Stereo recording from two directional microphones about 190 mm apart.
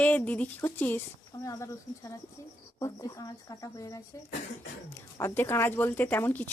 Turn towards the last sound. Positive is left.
turn(degrees=10)  # may be behind; listen again after turning